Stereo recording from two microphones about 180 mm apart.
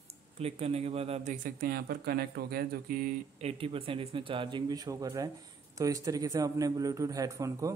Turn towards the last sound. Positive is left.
turn(degrees=-20)  # may be behind; listen again after turning